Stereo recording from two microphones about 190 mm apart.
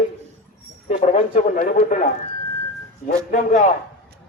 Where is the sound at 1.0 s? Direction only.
40° left (ahead or behind).